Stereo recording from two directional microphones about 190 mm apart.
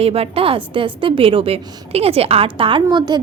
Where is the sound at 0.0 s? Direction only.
30° right (ahead or behind).